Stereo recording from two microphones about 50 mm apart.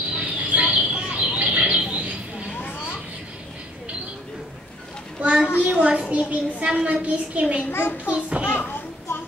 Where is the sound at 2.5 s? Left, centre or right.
Left.